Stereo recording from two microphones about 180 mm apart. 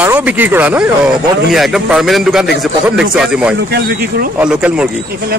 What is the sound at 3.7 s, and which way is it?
Speech, 55° right (ahead or behind).